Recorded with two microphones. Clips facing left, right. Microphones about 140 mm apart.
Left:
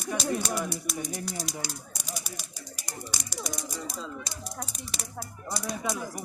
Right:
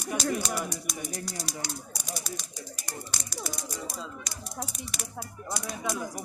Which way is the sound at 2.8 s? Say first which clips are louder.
Left 2 dB; 15° left (ahead or behind).